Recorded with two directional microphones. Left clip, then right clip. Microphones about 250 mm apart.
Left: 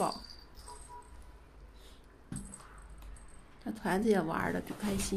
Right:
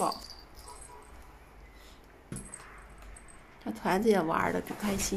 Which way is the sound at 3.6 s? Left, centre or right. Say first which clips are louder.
Right 4 dB; centre.